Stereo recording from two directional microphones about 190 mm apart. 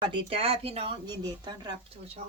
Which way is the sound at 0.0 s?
25° right (ahead or behind).